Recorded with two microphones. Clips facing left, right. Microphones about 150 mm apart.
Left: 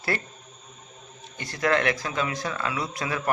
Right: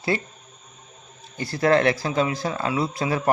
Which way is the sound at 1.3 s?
30° right (ahead or behind).